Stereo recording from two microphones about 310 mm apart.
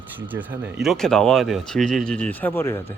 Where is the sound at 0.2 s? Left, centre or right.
Centre.